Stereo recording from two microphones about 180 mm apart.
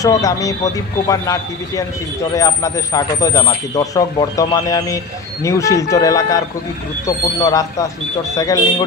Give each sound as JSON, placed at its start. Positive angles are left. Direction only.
{"t": 0.0, "sound": "a man's voice", "side_deg": 20}
{"t": 7.4, "sound": "speech", "side_deg": 20}